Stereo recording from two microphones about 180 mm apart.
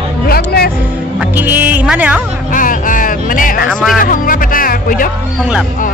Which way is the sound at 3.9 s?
50° left (ahead or behind).